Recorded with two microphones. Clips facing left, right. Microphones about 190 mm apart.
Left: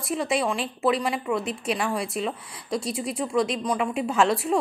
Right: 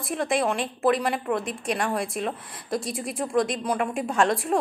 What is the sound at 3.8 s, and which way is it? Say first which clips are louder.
Speech: left 1 dB; 45° right (ahead or behind).